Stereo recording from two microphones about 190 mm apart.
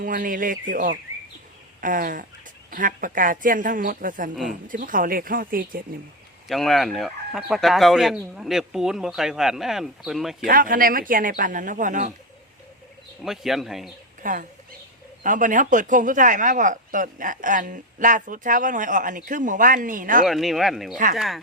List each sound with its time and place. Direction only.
0.0 s speech: 45° right (ahead or behind)
1.8 s speech: 45° right (ahead or behind)
6.5 s speech: centre (ahead or behind)
10.4 s speech: 45° right (ahead or behind)
13.2 s speech: centre (ahead or behind)
14.2 s speech: 45° right (ahead or behind)
20.2 s speech: centre (ahead or behind)